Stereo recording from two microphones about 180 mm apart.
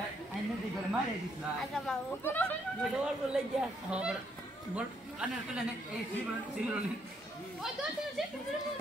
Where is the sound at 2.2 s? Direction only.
10° left (ahead or behind).